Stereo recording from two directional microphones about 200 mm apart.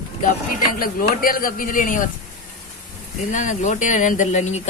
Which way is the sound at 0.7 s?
45° left (ahead or behind).